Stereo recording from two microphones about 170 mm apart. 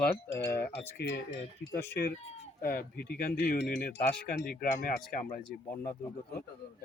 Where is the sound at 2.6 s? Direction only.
60° left (ahead or behind).